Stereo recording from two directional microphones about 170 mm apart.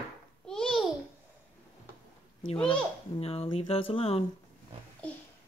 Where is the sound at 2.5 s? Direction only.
30° left (ahead or behind).